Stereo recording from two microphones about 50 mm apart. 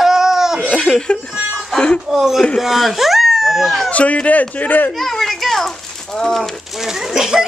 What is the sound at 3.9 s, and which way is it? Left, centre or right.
A child's voice, left.